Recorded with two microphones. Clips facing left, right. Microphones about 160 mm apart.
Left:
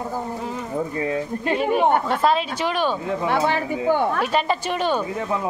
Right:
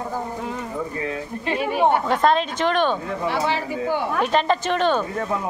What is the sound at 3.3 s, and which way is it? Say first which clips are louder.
Speech: left 2 dB; 50° left (ahead or behind).